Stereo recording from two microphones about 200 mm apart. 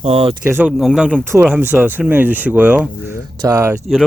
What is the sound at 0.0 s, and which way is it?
Speech, 30° right (ahead or behind).